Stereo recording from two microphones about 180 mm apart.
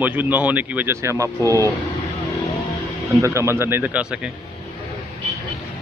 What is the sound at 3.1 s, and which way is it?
Speech, 15° right (ahead or behind).